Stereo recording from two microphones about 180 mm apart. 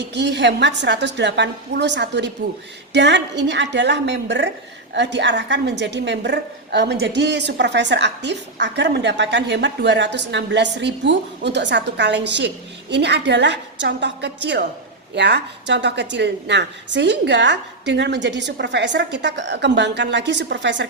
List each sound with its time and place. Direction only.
0.0 s a woman's voice: 75° right (ahead or behind)